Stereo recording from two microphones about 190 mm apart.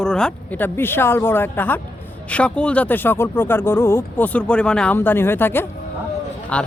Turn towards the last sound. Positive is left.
turn(degrees=5)  # may be behind; listen again after turning